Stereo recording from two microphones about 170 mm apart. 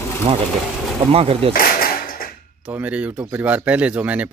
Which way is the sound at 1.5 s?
60° left (ahead or behind).